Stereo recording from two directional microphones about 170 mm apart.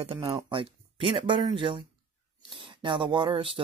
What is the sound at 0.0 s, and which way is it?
Speech, 35° right (ahead or behind).